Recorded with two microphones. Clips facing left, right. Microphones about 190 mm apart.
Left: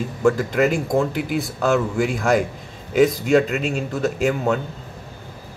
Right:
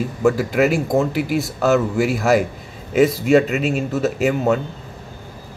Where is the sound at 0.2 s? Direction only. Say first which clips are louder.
Right 1 dB; 5° right (ahead or behind).